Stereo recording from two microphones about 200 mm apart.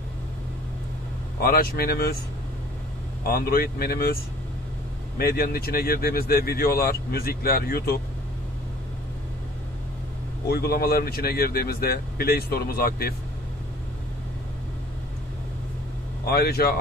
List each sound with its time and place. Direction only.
1.4 s speech: 45° left (ahead or behind)
3.3 s speech: 45° left (ahead or behind)
10.5 s speech: 50° left (ahead or behind)
16.3 s speech: 50° left (ahead or behind)